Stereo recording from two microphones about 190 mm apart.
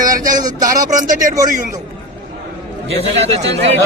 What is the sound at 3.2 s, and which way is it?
Speech, 35° right (ahead or behind).